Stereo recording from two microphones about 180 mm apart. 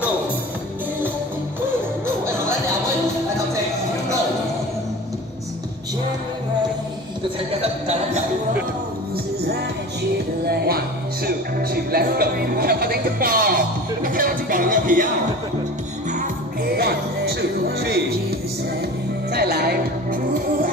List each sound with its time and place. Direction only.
10.4 s music: 60° right (ahead or behind)
16.1 s music: 50° right (ahead or behind)
19.3 s music: 65° right (ahead or behind)